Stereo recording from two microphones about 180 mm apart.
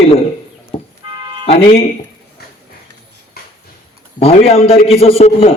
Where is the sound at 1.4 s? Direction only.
35° left (ahead or behind).